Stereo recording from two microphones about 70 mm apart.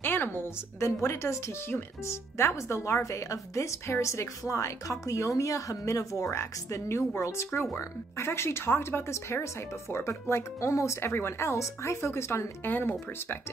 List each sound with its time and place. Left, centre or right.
0.0 s speech: left
12.6 s speech: left